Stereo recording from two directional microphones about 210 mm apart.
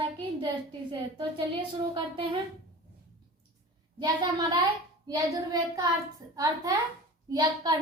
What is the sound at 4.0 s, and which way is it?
Speech, 20° right (ahead or behind).